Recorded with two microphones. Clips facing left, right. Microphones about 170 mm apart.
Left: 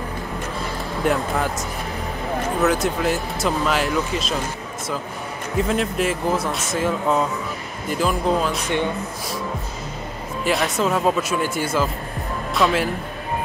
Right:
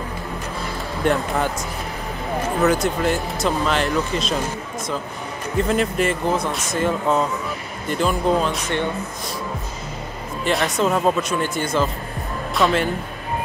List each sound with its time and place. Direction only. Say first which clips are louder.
1.0 s speech: right 1 dB; centre (ahead or behind)
2.6 s speech: right 2 dB; centre (ahead or behind)
5.6 s speech: right 1 dB; centre (ahead or behind)
10.4 s speech: right 1 dB; centre (ahead or behind)